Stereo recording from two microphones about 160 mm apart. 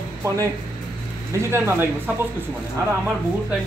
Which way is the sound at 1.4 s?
15° right (ahead or behind).